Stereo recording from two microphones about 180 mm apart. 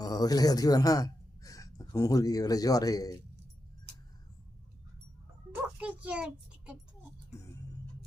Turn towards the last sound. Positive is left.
turn(degrees=-5)  # may be behind; listen again after turning